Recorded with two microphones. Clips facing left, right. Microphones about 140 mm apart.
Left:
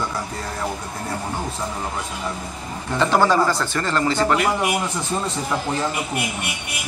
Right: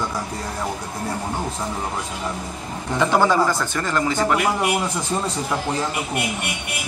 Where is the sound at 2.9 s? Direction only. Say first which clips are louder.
Even; 10° right (ahead or behind).